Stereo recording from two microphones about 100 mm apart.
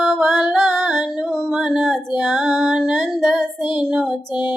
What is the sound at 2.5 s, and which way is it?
Music, centre (ahead or behind).